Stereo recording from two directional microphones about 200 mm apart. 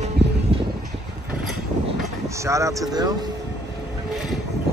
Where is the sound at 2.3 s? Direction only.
15° right (ahead or behind).